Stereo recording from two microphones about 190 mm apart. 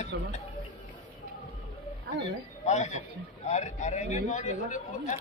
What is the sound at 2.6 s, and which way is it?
Speech, 40° left (ahead or behind).